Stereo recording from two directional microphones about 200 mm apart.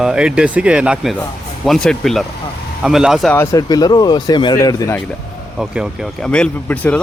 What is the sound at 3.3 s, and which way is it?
Speech, 15° left (ahead or behind).